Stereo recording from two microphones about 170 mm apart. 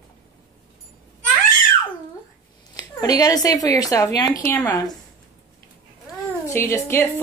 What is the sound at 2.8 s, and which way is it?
A woman's voice, 20° left (ahead or behind).